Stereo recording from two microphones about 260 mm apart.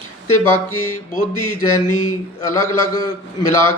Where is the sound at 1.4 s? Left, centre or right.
Left.